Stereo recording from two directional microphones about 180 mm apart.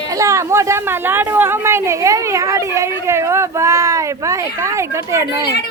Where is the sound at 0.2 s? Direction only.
15° right (ahead or behind).